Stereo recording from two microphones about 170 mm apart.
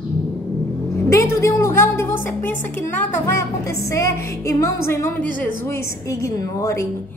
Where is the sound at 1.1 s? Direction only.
15° left (ahead or behind).